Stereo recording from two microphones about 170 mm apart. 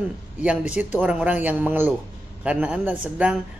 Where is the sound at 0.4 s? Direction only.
5° right (ahead or behind).